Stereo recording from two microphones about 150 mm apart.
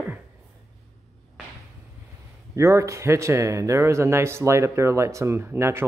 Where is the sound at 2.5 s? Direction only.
20° right (ahead or behind).